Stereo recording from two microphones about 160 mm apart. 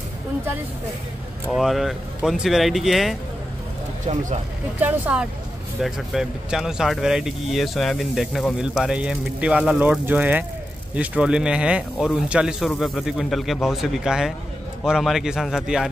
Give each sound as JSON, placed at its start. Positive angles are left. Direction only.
{"t": 1.5, "sound": "speech", "side_deg": 0}
{"t": 4.1, "sound": "speech", "side_deg": -50}
{"t": 4.7, "sound": "speech", "side_deg": -10}